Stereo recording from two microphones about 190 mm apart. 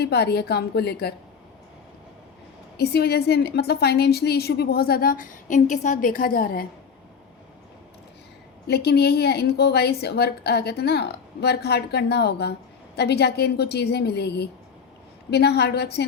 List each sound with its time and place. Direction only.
0.0 s a woman's voice: 60° left (ahead or behind)
2.7 s a woman's voice: 55° left (ahead or behind)
8.6 s a woman's voice: 60° left (ahead or behind)